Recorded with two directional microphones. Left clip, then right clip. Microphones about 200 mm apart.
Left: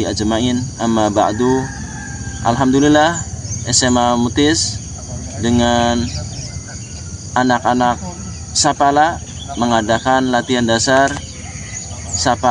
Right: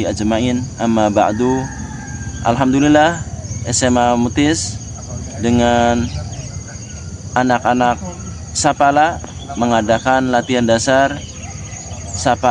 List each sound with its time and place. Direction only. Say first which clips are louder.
0.0 s speech: even; 15° right (ahead or behind)
7.3 s speech: even; 20° right (ahead or behind)
12.2 s speech: even; 20° right (ahead or behind)